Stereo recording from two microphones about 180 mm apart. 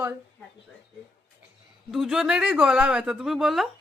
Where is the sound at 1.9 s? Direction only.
Centre (ahead or behind).